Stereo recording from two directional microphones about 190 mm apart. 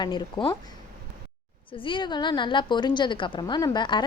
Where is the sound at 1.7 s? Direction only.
25° left (ahead or behind).